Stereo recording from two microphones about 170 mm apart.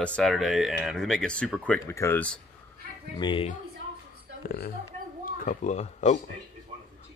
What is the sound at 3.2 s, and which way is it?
Speech, 25° left (ahead or behind).